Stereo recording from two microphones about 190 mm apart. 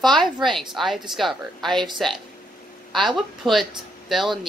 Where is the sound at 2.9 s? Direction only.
Centre (ahead or behind).